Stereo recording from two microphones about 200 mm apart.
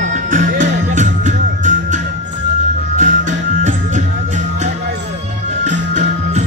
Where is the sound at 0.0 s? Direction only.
40° right (ahead or behind).